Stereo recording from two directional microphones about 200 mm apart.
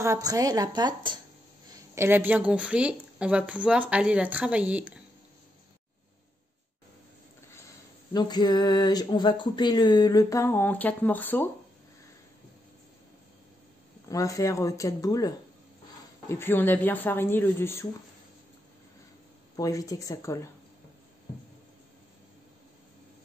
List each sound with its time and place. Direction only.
0.0 s a woman's voice: 15° right (ahead or behind)
2.0 s speech: 10° right (ahead or behind)
8.1 s speech: 20° left (ahead or behind)
14.0 s speech: 15° left (ahead or behind)
19.5 s speech: 15° left (ahead or behind)